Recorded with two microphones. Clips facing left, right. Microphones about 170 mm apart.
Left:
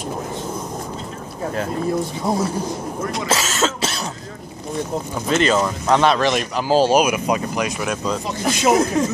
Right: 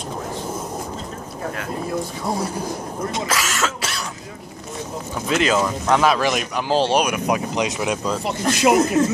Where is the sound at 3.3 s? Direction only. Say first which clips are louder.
Left 3 dB; 25° left (ahead or behind).